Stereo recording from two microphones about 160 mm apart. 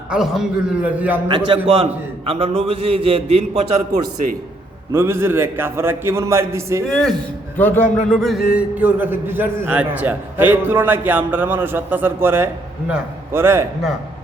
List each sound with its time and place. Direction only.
0.1 s a man's voice: 5° right (ahead or behind)
1.3 s a man's voice: 35° right (ahead or behind)
4.9 s a man's voice: 15° right (ahead or behind)
6.8 s a man's voice: centre (ahead or behind); by 13.7 s 15° right (ahead or behind)